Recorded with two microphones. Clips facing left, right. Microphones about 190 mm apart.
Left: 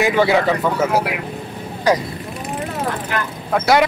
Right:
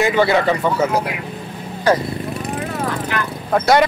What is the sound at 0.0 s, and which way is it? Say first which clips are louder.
Speech: even; 10° left (ahead or behind).